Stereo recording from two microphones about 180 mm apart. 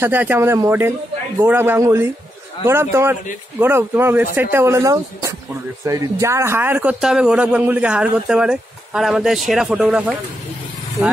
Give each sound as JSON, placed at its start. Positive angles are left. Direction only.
{"t": 0.0, "sound": "speech", "side_deg": -10}